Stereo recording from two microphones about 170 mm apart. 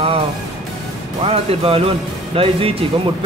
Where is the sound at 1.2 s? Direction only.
35° right (ahead or behind).